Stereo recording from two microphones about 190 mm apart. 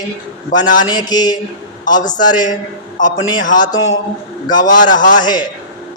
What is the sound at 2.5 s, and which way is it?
Speech, 45° left (ahead or behind).